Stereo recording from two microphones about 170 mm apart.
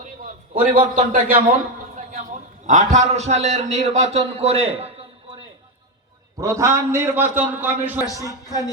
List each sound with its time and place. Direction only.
0.8 s a man's voice: 40° right (ahead or behind)
6.4 s a man's voice: 15° right (ahead or behind)
8.2 s speech: 20° right (ahead or behind)